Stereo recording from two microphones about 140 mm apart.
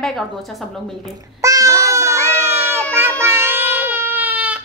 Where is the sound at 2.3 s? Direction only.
15° right (ahead or behind).